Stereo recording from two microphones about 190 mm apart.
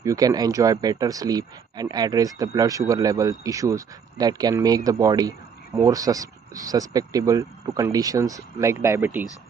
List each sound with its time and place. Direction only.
0.0 s speech: 20° right (ahead or behind)